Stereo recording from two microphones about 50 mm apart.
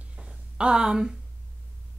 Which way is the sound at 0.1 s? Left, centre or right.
Centre.